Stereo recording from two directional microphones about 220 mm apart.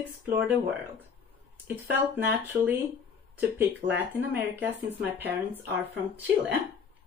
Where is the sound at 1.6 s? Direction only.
10° right (ahead or behind).